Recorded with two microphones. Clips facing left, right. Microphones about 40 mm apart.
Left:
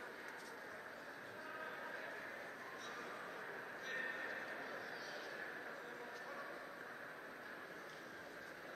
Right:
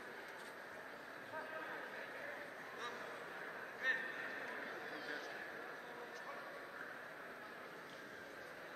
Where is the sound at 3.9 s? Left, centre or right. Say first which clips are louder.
Right 8 dB; right.